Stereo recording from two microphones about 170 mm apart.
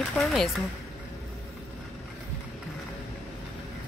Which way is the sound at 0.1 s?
Centre (ahead or behind).